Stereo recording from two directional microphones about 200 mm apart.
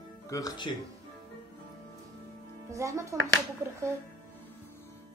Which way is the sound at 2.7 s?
15° right (ahead or behind).